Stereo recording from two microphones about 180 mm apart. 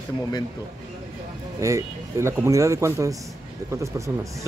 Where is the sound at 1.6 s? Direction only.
15° right (ahead or behind).